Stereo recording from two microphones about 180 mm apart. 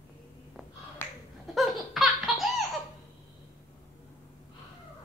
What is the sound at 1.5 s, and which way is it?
Laughter, centre (ahead or behind).